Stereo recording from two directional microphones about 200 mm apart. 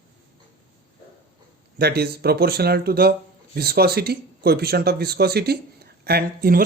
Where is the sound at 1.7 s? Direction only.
55° right (ahead or behind).